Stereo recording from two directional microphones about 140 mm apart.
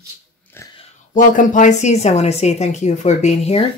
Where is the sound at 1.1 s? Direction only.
70° left (ahead or behind).